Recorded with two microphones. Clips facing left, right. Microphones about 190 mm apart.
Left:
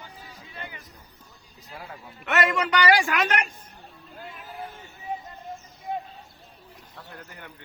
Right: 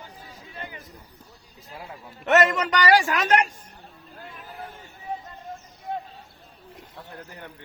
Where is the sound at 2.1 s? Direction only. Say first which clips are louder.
Right 5 dB; 45° right (ahead or behind).